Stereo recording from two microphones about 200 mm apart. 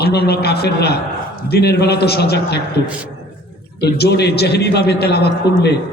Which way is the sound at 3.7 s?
55° left (ahead or behind).